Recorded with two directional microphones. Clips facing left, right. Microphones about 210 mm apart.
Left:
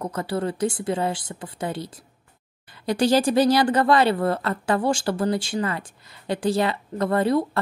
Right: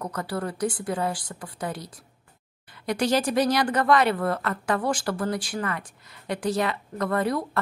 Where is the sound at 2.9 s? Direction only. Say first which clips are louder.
Left 4 dB; 30° left (ahead or behind).